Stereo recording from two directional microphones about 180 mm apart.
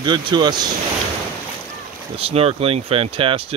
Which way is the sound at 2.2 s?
35° right (ahead or behind).